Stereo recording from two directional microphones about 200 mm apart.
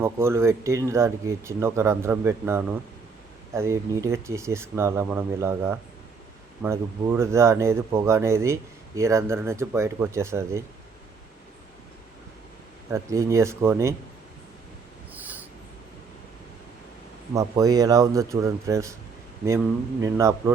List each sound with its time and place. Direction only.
0.0 s speech: 15° right (ahead or behind)
12.9 s speech: 15° right (ahead or behind)
15.1 s dog: 10° right (ahead or behind)
17.3 s speech: 20° right (ahead or behind)